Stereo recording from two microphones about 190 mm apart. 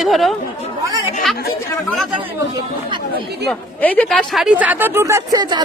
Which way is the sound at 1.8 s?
Centre (ahead or behind).